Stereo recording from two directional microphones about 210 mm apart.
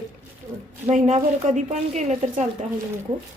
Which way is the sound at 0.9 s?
35° right (ahead or behind).